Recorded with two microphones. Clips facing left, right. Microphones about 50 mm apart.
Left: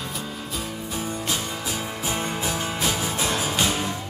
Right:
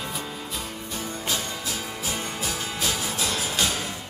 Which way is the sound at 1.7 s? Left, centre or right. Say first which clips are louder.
Left 3 dB; left.